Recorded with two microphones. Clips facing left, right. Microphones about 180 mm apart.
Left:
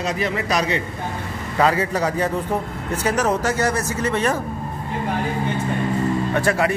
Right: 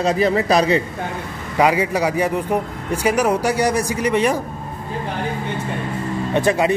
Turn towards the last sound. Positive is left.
turn(degrees=-20)  # may be behind; listen again after turning